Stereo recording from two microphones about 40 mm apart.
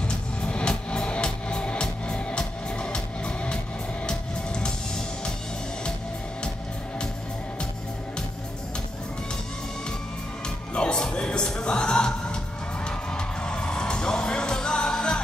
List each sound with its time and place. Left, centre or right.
0.4 s music: left
10.7 s music: left